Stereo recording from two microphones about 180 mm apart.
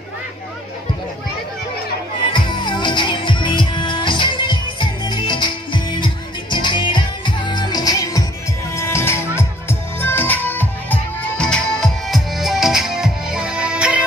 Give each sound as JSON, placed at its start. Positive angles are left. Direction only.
{"t": 2.3, "sound": "music", "side_deg": 25}